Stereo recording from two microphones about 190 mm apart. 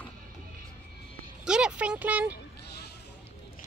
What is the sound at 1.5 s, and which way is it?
Speech, 5° right (ahead or behind).